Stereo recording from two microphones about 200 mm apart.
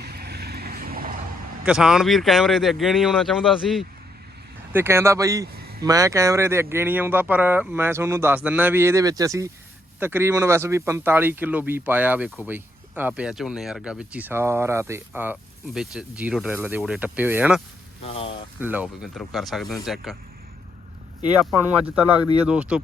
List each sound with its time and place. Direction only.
0.0 s vehicle: 50° right (ahead or behind)
1.6 s speech: 5° right (ahead or behind)
4.7 s speech: 10° right (ahead or behind)
18.0 s speech: 30° left (ahead or behind)
18.6 s speech: 10° right (ahead or behind)
22.4 s speech: 5° right (ahead or behind)